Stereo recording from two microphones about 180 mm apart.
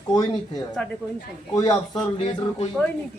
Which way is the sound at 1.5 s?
20° left (ahead or behind).